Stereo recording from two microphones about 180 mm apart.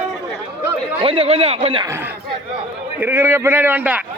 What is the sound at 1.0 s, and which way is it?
Speech, 30° right (ahead or behind).